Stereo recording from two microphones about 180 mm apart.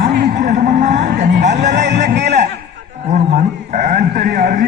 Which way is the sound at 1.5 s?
75° right (ahead or behind).